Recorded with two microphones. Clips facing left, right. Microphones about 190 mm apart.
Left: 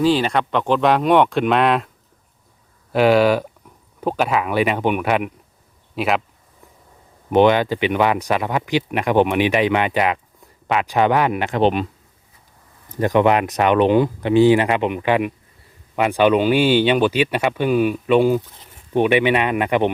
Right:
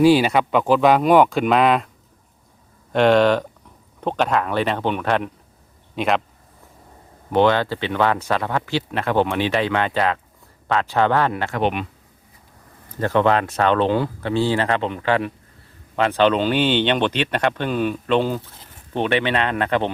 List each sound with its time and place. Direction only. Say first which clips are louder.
0.0 s speech: right 3 dB; 10° right (ahead or behind)
2.9 s speech: left 1 dB; 5° left (ahead or behind)
7.3 s speech: left 3 dB; 15° left (ahead or behind)
11.6 s speech: left 5 dB; 35° left (ahead or behind)
13.0 s speech: left 2 dB; 15° left (ahead or behind)